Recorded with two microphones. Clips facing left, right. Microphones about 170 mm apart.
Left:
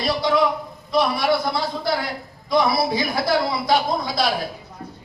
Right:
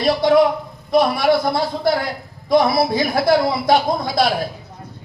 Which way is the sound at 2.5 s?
55° right (ahead or behind).